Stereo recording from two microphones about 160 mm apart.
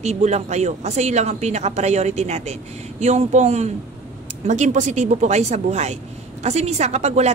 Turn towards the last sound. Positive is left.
turn(degrees=-45)  # may be behind; listen again after turning